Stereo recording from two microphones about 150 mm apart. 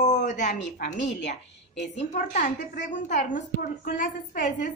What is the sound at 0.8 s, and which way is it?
A woman's voice, 50° left (ahead or behind).